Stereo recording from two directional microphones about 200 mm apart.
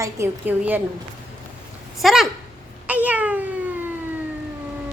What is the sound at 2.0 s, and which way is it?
Speech, centre (ahead or behind).